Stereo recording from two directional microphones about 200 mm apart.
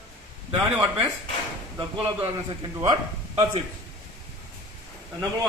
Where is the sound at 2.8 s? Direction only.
25° right (ahead or behind).